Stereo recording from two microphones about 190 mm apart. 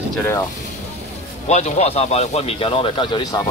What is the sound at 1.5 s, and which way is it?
Speech, 35° left (ahead or behind).